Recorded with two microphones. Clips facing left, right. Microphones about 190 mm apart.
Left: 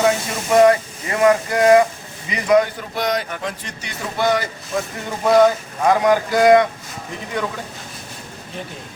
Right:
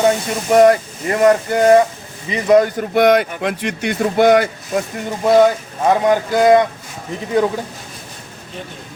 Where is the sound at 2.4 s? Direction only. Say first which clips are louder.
Right 3 dB; 45° right (ahead or behind).